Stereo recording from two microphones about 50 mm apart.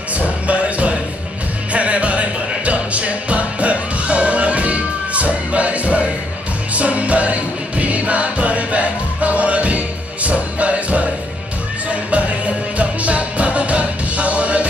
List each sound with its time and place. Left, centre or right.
0.5 s music: right